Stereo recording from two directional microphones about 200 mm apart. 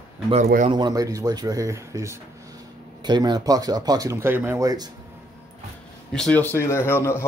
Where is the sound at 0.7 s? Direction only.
20° right (ahead or behind).